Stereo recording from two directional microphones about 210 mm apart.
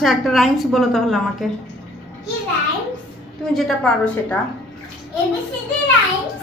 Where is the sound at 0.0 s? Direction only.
Centre (ahead or behind).